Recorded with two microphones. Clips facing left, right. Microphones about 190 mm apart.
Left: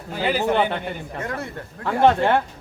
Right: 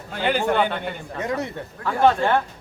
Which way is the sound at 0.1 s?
5° left (ahead or behind).